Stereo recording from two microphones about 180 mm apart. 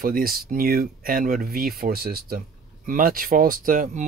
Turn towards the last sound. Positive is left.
turn(degrees=-45)  # may be behind; listen again after turning